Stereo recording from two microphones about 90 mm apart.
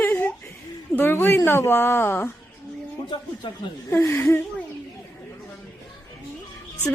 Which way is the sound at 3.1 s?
65° left (ahead or behind).